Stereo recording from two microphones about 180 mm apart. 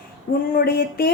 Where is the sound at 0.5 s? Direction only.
60° left (ahead or behind).